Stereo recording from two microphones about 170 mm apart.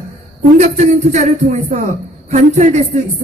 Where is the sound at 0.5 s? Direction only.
45° right (ahead or behind).